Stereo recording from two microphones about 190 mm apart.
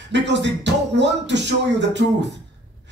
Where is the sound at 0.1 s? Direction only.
65° right (ahead or behind).